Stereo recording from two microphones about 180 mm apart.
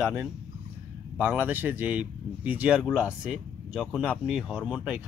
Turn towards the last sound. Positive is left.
turn(degrees=-5)  # may be behind; listen again after turning